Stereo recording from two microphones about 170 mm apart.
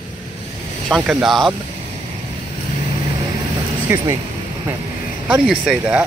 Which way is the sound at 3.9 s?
15° right (ahead or behind).